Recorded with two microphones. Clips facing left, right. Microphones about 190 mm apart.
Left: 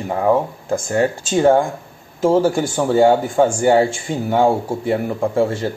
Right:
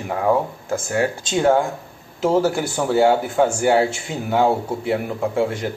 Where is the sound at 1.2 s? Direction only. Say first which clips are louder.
Left 3 dB; 10° left (ahead or behind).